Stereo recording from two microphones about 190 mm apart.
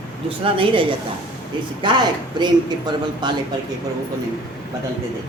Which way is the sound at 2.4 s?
25° right (ahead or behind).